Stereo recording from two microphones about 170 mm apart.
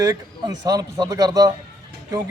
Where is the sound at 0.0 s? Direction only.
20° right (ahead or behind).